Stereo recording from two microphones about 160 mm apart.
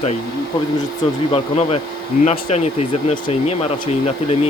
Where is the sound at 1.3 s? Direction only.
40° left (ahead or behind).